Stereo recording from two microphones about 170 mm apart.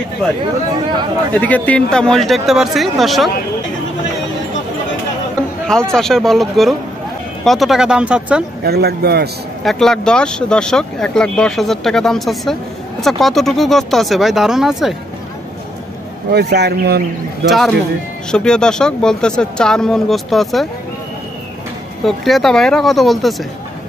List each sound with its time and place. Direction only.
1.3 s speech: 10° left (ahead or behind)
5.7 s speech: 5° left (ahead or behind)
8.6 s a man's voice: 70° right (ahead or behind)
9.6 s speech: centre (ahead or behind)
16.3 s a man's voice: 70° right (ahead or behind)
17.5 s speech: centre (ahead or behind)
22.0 s speech: centre (ahead or behind)